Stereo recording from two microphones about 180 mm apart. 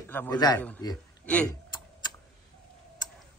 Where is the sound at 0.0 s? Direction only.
10° left (ahead or behind).